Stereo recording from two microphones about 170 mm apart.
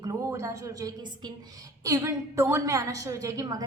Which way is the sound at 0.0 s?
20° right (ahead or behind).